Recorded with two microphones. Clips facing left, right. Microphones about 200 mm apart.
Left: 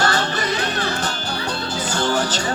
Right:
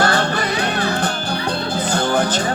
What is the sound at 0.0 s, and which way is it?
Music, 55° right (ahead or behind).